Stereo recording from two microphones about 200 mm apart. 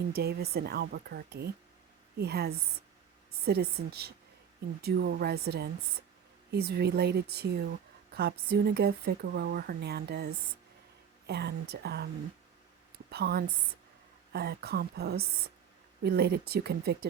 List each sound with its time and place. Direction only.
0.1 s a woman's voice: 50° right (ahead or behind)
13.1 s a woman's voice: 55° right (ahead or behind)